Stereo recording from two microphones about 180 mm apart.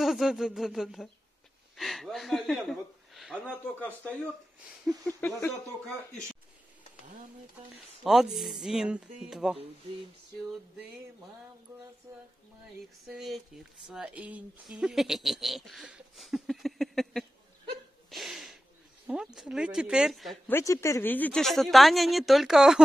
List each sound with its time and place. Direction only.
0.0 s a sound: centre (ahead or behind)
1.8 s speech: centre (ahead or behind)
8.0 s speech: centre (ahead or behind)
11.7 s speech: 20° right (ahead or behind)
13.1 s speech: centre (ahead or behind)
18.1 s a sound: centre (ahead or behind)
19.0 s speech: 5° right (ahead or behind)
20.5 s speech: 15° left (ahead or behind); by 22.8 s centre (ahead or behind)